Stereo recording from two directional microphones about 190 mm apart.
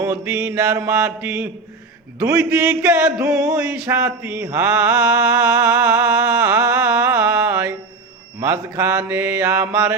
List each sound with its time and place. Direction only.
0.0 s mantra: 10° right (ahead or behind)